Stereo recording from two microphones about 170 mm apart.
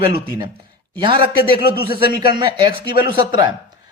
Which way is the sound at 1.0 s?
30° right (ahead or behind).